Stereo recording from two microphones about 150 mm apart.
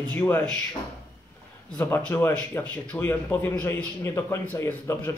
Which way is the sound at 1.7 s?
10° left (ahead or behind).